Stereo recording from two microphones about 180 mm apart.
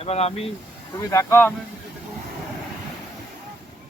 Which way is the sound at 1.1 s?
15° left (ahead or behind).